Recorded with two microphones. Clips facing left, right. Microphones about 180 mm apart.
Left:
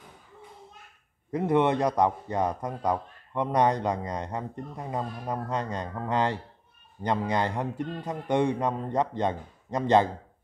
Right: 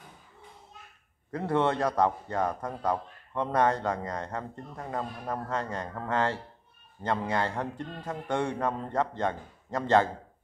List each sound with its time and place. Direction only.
1.3 s speech: 15° left (ahead or behind)